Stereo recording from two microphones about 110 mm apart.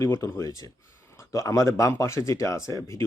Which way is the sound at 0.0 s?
30° left (ahead or behind).